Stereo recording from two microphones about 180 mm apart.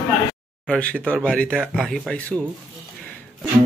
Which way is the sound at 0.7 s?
5° left (ahead or behind).